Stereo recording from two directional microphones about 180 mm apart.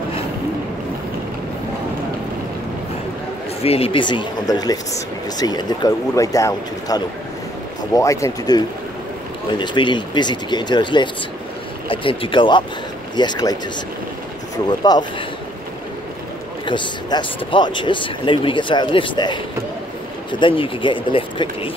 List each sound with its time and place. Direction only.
3.6 s speech: 35° left (ahead or behind)
14.8 s speech: 25° left (ahead or behind)
16.6 s speech: 25° left (ahead or behind)